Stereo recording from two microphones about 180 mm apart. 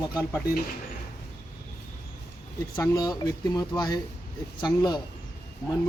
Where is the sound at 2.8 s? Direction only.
20° left (ahead or behind).